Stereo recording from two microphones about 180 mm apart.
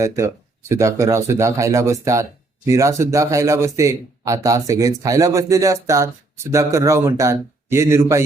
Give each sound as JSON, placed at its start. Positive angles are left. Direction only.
{"t": 0.7, "sound": "speech", "side_deg": -15}